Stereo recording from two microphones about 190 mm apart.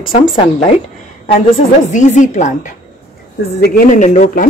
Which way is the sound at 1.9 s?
40° left (ahead or behind).